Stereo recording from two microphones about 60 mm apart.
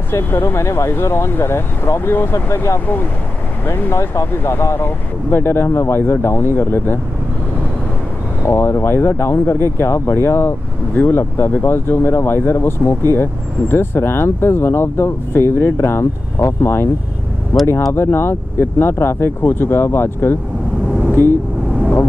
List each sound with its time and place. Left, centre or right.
0.1 s speech: left
0.7 s speech: left
8.5 s speech: left